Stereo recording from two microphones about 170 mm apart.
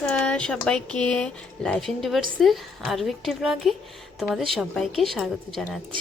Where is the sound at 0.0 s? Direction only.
5° left (ahead or behind).